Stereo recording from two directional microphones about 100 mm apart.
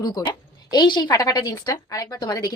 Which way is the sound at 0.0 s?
45° left (ahead or behind).